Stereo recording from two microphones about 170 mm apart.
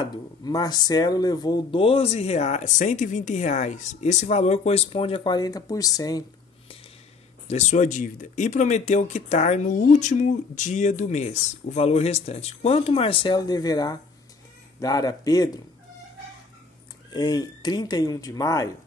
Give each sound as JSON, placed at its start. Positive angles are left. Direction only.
{"t": 0.0, "sound": "speech", "side_deg": 25}
{"t": 7.4, "sound": "speech", "side_deg": 40}
{"t": 17.1, "sound": "speech", "side_deg": 25}